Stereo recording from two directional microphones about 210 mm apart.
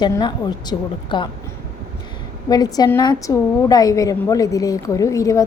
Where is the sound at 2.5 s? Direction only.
20° left (ahead or behind).